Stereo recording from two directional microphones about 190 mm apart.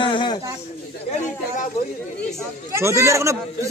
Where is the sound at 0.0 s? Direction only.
25° left (ahead or behind).